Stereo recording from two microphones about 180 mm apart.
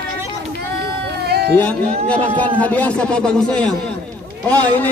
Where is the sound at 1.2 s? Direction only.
60° right (ahead or behind).